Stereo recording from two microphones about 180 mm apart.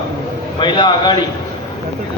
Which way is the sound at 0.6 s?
25° left (ahead or behind).